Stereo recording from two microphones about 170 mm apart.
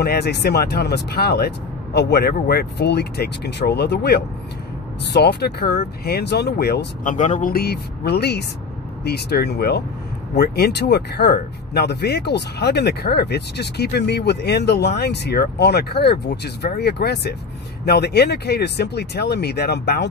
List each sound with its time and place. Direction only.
0.0 s speech: 70° left (ahead or behind)
7.1 s speech: 45° left (ahead or behind)
7.5 s speech: 70° left (ahead or behind)